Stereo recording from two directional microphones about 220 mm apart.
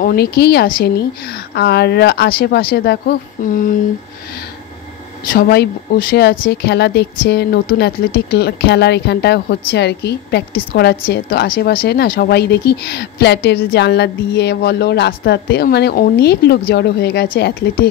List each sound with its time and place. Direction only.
0.0 s speech: 45° left (ahead or behind)
5.3 s speech: 45° left (ahead or behind)